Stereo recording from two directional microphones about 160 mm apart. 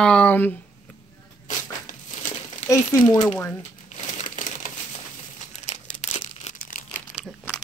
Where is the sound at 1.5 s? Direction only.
50° left (ahead or behind).